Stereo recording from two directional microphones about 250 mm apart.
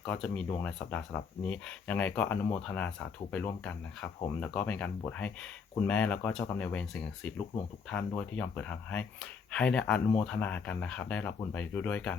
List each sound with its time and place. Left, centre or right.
0.0 s speech: centre